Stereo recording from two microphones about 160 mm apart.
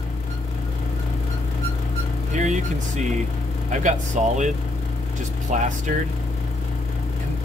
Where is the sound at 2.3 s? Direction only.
50° right (ahead or behind).